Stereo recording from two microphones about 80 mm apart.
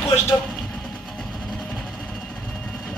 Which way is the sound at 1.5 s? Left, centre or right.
Centre.